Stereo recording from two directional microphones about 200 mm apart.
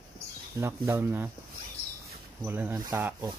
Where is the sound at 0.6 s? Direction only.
10° right (ahead or behind).